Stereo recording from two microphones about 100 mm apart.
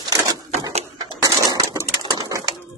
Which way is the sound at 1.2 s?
35° right (ahead or behind).